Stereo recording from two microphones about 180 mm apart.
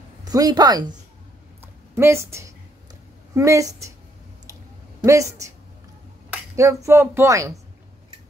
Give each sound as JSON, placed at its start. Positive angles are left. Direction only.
{"t": 0.2, "sound": "speech", "side_deg": -20}
{"t": 1.6, "sound": "a sound", "side_deg": -15}
{"t": 3.3, "sound": "speech", "side_deg": -15}
{"t": 5.0, "sound": "speech", "side_deg": -15}
{"t": 6.5, "sound": "speech", "side_deg": -15}